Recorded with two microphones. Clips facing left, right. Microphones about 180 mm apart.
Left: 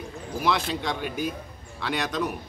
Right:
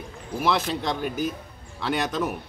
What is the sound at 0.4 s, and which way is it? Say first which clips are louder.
A man's voice: right 2 dB; centre (ahead or behind).